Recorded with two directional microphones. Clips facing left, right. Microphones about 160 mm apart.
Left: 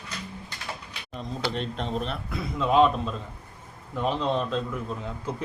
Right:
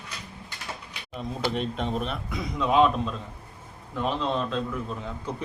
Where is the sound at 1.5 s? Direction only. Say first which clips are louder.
Right 2 dB; 5° right (ahead or behind).